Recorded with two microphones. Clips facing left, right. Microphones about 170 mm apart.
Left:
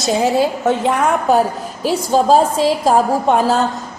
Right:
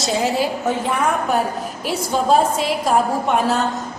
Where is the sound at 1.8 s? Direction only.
35° left (ahead or behind).